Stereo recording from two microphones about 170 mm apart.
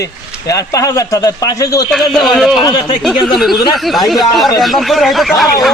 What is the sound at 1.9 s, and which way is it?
Speech, centre (ahead or behind).